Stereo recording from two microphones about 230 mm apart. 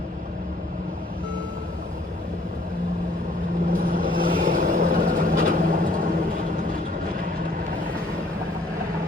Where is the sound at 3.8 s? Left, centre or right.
Right.